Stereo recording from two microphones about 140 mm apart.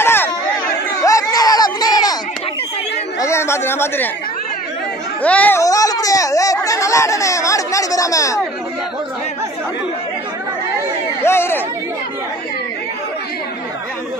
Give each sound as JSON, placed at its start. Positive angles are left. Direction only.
{"t": 0.0, "sound": "chatter", "side_deg": 15}
{"t": 1.0, "sound": "a sound", "side_deg": 25}
{"t": 3.2, "sound": "a sound", "side_deg": 20}
{"t": 5.2, "sound": "speech", "side_deg": 10}
{"t": 5.6, "sound": "speech", "side_deg": 25}
{"t": 11.2, "sound": "speech", "side_deg": 15}